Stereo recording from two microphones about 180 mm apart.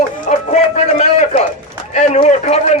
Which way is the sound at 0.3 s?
40° left (ahead or behind).